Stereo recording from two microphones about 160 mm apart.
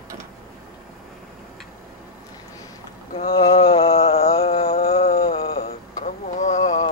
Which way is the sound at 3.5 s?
35° left (ahead or behind).